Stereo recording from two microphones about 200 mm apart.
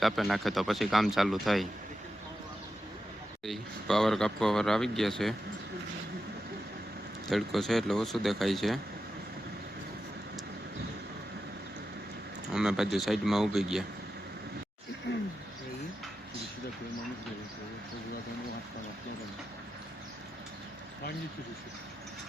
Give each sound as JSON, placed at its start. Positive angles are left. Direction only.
{"t": 0.0, "sound": "speech", "side_deg": 0}
{"t": 3.4, "sound": "speech", "side_deg": 0}
{"t": 7.3, "sound": "speech", "side_deg": 0}
{"t": 12.5, "sound": "speech", "side_deg": -5}
{"t": 15.1, "sound": "a sound", "side_deg": 55}